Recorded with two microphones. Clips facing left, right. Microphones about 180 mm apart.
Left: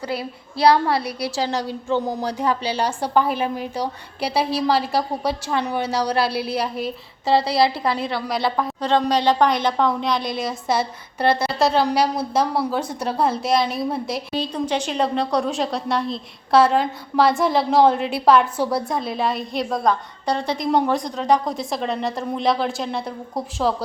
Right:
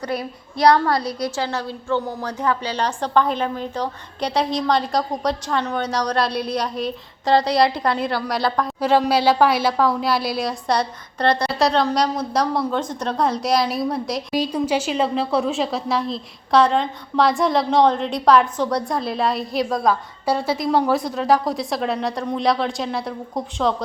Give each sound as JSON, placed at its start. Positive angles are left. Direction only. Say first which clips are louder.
{"t": 0.2, "sound": "a woman's voice", "louder": "even", "side_deg": 30}
{"t": 0.7, "sound": "a woman's voice", "louder": "right 1 dB", "side_deg": 5}
{"t": 14.3, "sound": "a woman's voice", "louder": "right 3 dB", "side_deg": -10}